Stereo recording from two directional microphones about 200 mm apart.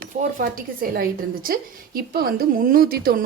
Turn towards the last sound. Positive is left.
turn(degrees=-50)  # may be behind; listen again after turning